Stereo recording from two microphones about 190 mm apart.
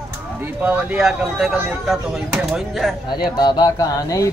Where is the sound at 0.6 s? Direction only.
10° right (ahead or behind).